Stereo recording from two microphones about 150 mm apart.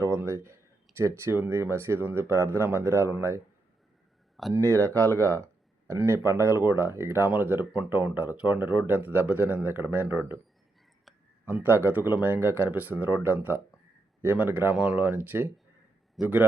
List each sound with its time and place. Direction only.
0.0 s speech: 15° right (ahead or behind)
4.5 s speech: 20° right (ahead or behind)
11.4 s speech: 15° right (ahead or behind)